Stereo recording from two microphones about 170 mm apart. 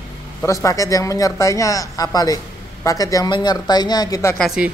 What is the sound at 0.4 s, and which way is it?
Speech, 20° left (ahead or behind).